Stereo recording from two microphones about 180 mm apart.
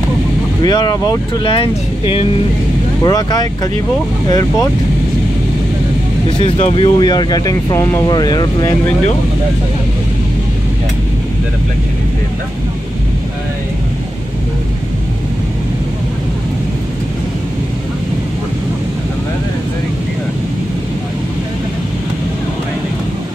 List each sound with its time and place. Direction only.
0.6 s speech: 25° left (ahead or behind)
6.4 s speech: 35° left (ahead or behind)